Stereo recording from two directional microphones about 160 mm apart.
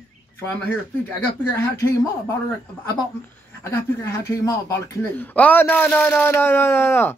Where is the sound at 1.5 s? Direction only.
20° left (ahead or behind).